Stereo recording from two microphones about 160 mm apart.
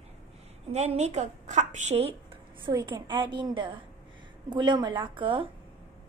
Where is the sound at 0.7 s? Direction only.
45° right (ahead or behind).